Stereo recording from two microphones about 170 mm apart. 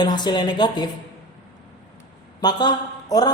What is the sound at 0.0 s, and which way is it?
Speech, 25° left (ahead or behind).